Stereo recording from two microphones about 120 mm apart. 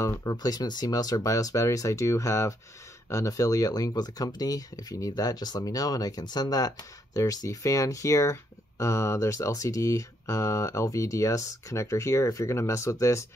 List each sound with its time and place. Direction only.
0.0 s speech: 30° left (ahead or behind)